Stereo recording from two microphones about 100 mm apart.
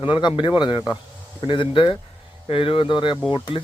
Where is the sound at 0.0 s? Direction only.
50° left (ahead or behind).